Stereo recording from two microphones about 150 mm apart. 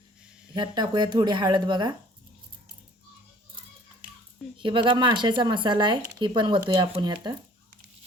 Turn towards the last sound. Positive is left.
turn(degrees=-30)  # may be behind; listen again after turning